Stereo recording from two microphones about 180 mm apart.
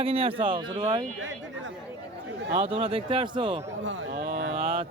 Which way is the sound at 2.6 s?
30° right (ahead or behind).